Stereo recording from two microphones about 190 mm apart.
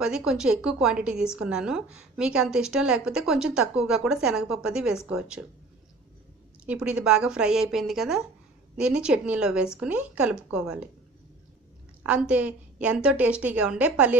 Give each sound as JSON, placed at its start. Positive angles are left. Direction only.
{"t": 0.0, "sound": "a woman's voice", "side_deg": -5}
{"t": 6.6, "sound": "a woman's voice", "side_deg": -5}
{"t": 12.0, "sound": "a woman's voice", "side_deg": -5}